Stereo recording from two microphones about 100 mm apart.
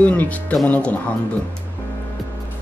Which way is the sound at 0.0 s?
15° left (ahead or behind).